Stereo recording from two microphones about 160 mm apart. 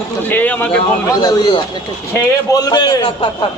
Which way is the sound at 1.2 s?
25° left (ahead or behind).